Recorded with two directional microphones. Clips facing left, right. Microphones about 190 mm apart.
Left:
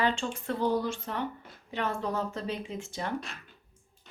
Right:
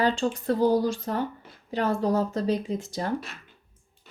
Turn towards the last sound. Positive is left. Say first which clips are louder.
# right 6 dB
turn(degrees=-40)  # may be behind; listen again after turning